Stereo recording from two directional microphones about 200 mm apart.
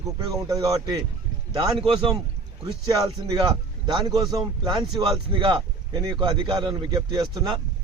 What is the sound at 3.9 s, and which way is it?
Speech, 20° right (ahead or behind).